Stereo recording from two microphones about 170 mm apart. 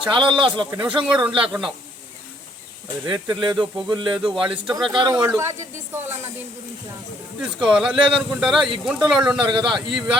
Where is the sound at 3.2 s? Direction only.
25° right (ahead or behind).